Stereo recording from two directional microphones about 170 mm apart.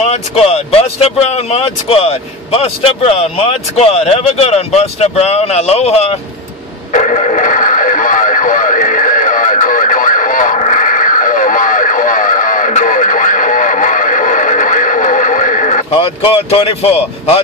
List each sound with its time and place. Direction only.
0.0 s speech: 40° left (ahead or behind)
6.9 s radio: 45° left (ahead or behind)
15.9 s speech: 35° left (ahead or behind)